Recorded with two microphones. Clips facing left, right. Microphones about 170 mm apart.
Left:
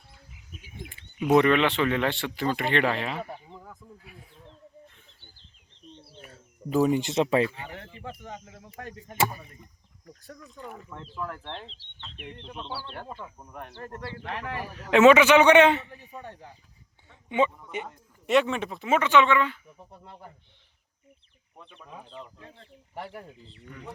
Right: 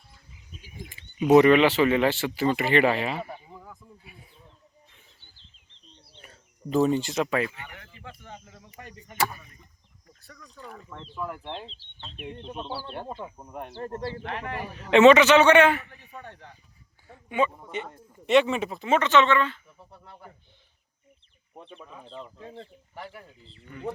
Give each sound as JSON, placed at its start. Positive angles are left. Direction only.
{"t": 0.9, "sound": "speech", "side_deg": -5}
{"t": 6.1, "sound": "bird", "side_deg": 5}
{"t": 7.0, "sound": "speech", "side_deg": 25}
{"t": 8.4, "sound": "speech", "side_deg": 50}
{"t": 10.6, "sound": "speech", "side_deg": 10}
{"t": 11.1, "sound": "speech", "side_deg": -10}
{"t": 14.3, "sound": "speech", "side_deg": 0}
{"t": 16.2, "sound": "speech", "side_deg": 10}
{"t": 17.7, "sound": "speech", "side_deg": 10}
{"t": 18.3, "sound": "speech", "side_deg": 0}
{"t": 21.5, "sound": "speech", "side_deg": -30}